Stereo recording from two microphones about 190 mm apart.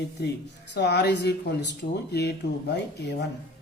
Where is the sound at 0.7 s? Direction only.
65° left (ahead or behind).